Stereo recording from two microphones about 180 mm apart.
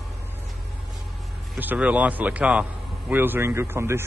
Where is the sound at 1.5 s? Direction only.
10° right (ahead or behind).